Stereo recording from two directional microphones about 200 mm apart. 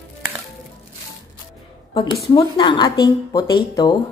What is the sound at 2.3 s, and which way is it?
Speech, 25° left (ahead or behind).